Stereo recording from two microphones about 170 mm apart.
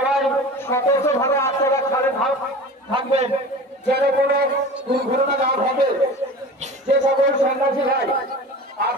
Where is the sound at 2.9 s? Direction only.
35° right (ahead or behind).